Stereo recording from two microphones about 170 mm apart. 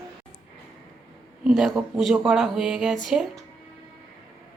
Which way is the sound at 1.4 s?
Centre (ahead or behind).